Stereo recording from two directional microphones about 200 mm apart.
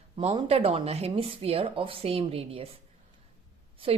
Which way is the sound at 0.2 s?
30° right (ahead or behind).